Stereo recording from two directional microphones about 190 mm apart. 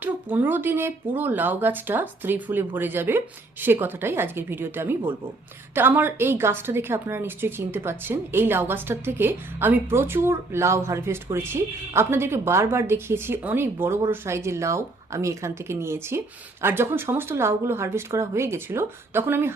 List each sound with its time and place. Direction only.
0.0 s a woman's voice: 10° right (ahead or behind)